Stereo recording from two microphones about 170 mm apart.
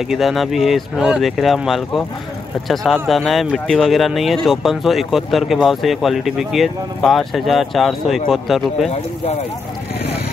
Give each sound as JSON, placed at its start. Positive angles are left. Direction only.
{"t": 0.1, "sound": "speech", "side_deg": 0}
{"t": 8.9, "sound": "speech", "side_deg": 40}